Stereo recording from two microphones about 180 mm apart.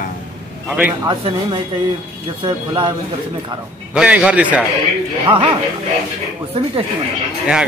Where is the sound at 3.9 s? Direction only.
5° right (ahead or behind).